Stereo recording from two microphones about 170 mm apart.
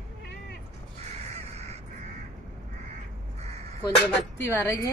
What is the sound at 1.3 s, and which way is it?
Crow, 40° right (ahead or behind).